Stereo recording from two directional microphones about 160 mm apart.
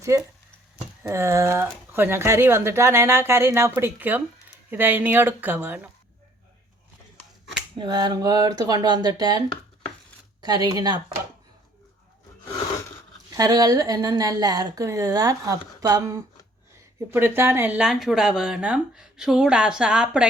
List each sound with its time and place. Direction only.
0.0 s stir: 20° right (ahead or behind)
1.0 s speech: 15° right (ahead or behind)
7.8 s a woman's voice: 25° right (ahead or behind)
10.4 s a woman's voice: 25° right (ahead or behind)
13.3 s a woman's voice: 25° right (ahead or behind); by 20.2 s 5° right (ahead or behind)